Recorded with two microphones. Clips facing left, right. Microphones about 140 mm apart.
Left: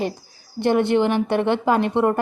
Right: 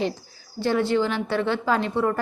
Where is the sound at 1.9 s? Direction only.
30° left (ahead or behind).